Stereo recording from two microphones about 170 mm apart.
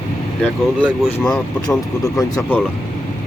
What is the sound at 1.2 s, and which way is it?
Speech, 5° left (ahead or behind).